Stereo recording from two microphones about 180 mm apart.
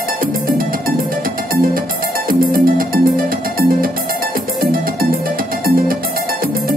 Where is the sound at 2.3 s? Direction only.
50° right (ahead or behind).